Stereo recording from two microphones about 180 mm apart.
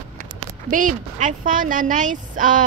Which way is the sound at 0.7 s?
45° right (ahead or behind).